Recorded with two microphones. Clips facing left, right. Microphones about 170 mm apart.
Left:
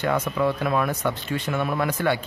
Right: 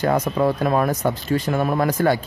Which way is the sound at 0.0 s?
40° right (ahead or behind).